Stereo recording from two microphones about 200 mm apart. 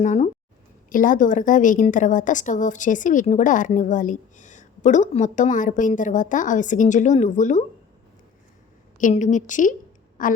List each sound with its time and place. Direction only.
0.0 s a woman's voice: 35° left (ahead or behind)
9.0 s a woman's voice: 40° left (ahead or behind)